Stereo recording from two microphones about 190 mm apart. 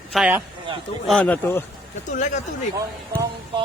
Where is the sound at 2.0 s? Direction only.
40° left (ahead or behind).